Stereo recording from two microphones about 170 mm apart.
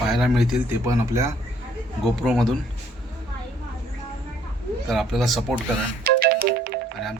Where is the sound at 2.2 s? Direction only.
Centre (ahead or behind).